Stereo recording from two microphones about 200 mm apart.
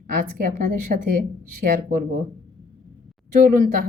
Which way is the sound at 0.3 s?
45° right (ahead or behind).